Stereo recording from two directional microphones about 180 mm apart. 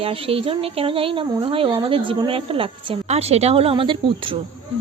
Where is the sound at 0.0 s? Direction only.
30° right (ahead or behind).